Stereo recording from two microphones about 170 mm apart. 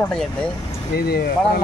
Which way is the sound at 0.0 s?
5° left (ahead or behind).